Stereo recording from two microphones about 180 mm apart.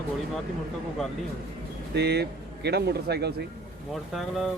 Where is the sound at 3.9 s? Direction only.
Centre (ahead or behind).